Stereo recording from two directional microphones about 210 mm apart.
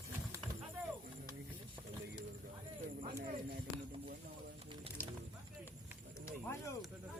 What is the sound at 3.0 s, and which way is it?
Speech, 45° right (ahead or behind).